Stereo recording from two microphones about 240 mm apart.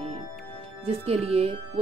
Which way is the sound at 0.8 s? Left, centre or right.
Right.